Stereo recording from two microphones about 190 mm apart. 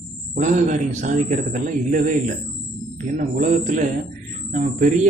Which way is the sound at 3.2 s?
45° right (ahead or behind).